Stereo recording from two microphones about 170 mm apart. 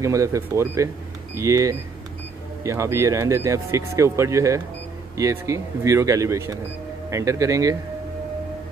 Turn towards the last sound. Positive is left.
turn(degrees=-20)  # may be behind; listen again after turning